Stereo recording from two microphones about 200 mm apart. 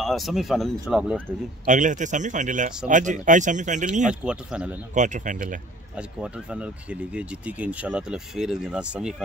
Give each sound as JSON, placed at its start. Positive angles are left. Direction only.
{"t": 0.0, "sound": "speech", "side_deg": 0}
{"t": 1.7, "sound": "speech", "side_deg": -40}
{"t": 4.1, "sound": "speech", "side_deg": -5}
{"t": 4.9, "sound": "speech", "side_deg": -40}
{"t": 5.9, "sound": "speech", "side_deg": -5}